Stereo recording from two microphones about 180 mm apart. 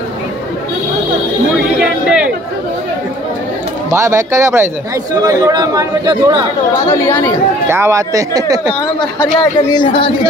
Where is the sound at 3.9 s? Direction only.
15° right (ahead or behind).